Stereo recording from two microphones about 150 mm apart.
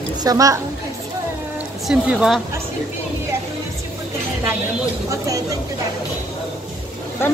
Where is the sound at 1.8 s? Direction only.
Centre (ahead or behind).